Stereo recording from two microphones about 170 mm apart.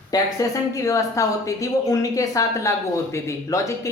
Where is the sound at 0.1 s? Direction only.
20° left (ahead or behind).